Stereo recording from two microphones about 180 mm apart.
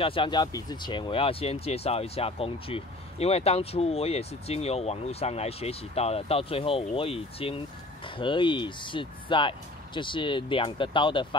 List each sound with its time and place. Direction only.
0.0 s speech: 30° left (ahead or behind)